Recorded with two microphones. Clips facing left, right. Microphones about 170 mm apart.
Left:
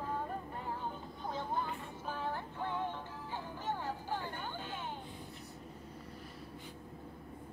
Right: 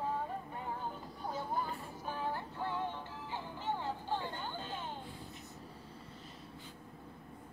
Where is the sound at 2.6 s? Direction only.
15° left (ahead or behind).